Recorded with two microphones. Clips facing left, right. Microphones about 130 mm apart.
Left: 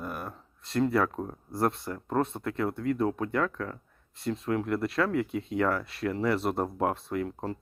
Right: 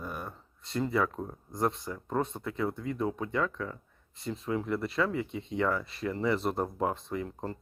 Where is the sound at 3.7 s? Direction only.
Centre (ahead or behind).